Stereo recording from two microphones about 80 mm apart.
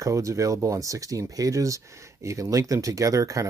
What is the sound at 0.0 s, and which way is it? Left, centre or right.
Speech, right.